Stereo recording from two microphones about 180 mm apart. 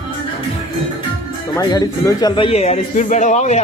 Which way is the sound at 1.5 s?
20° left (ahead or behind).